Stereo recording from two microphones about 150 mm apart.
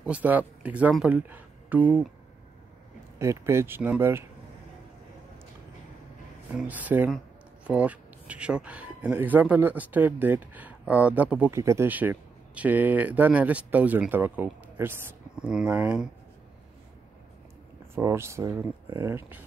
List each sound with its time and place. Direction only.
0.0 s speech: 10° right (ahead or behind)
3.2 s speech: 20° right (ahead or behind)
6.5 s speech: 10° right (ahead or behind)
17.9 s speech: 15° right (ahead or behind)